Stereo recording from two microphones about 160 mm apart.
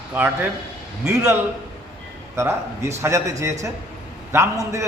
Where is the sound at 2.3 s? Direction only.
20° right (ahead or behind).